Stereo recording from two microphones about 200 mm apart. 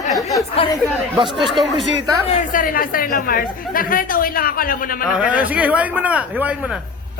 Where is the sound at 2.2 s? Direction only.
40° left (ahead or behind).